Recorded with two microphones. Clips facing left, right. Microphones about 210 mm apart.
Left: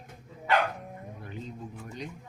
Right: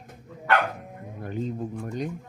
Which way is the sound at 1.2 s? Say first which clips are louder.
Right 12 dB; 45° right (ahead or behind).